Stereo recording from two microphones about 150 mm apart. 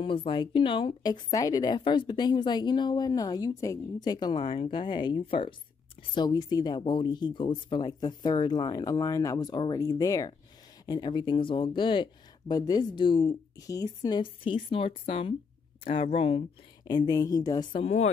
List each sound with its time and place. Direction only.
0.0 s a woman's voice: 35° left (ahead or behind)
16.8 s speech: 25° left (ahead or behind)
17.8 s speech: 50° left (ahead or behind)